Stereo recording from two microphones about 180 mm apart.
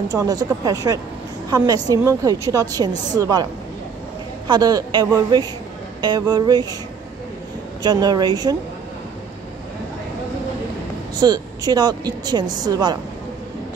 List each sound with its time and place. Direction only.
0.1 s a woman's voice: 20° right (ahead or behind)
4.5 s a woman's voice: 20° right (ahead or behind)
7.8 s a woman's voice: 25° right (ahead or behind)
11.1 s a woman's voice: 20° right (ahead or behind)